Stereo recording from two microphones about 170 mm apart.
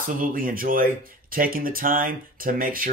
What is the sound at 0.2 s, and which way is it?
Speech, 55° right (ahead or behind).